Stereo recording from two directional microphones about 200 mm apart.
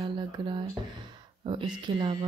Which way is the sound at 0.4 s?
20° right (ahead or behind).